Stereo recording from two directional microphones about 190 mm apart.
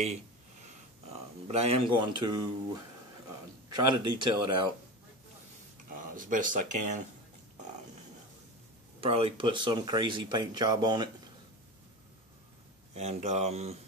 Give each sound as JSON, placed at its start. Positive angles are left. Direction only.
{"t": 1.5, "sound": "speech", "side_deg": -30}
{"t": 3.7, "sound": "speech", "side_deg": -25}
{"t": 6.1, "sound": "speech", "side_deg": -45}
{"t": 9.0, "sound": "speech", "side_deg": -30}
{"t": 12.9, "sound": "speech", "side_deg": -35}